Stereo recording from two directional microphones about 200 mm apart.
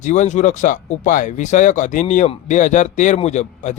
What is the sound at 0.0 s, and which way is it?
Speech, 35° left (ahead or behind).